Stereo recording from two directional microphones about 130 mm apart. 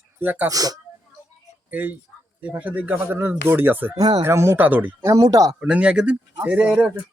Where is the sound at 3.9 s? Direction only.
35° right (ahead or behind).